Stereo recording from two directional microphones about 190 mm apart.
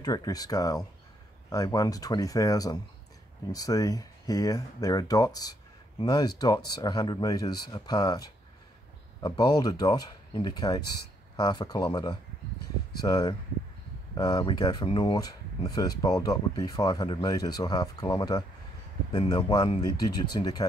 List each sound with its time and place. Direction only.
0.0 s speech: 20° left (ahead or behind)